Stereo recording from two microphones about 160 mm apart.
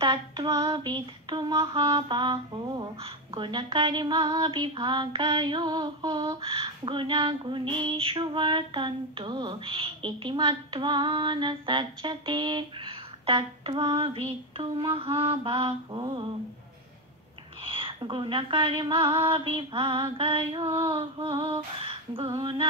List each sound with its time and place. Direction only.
0.0 s speech: 30° right (ahead or behind)
17.6 s speech: 35° right (ahead or behind)